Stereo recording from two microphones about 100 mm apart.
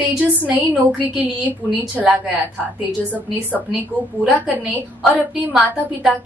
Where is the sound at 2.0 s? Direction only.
5° right (ahead or behind).